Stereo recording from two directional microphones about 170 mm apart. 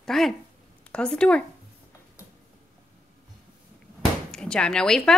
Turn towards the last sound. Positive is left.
turn(degrees=5)  # may be behind; listen again after turning